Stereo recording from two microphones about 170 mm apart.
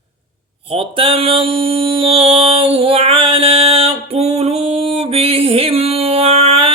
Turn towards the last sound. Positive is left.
turn(degrees=-35)  # may be behind; listen again after turning